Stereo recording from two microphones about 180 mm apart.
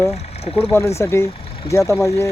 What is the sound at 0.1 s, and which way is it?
Speech, 35° left (ahead or behind).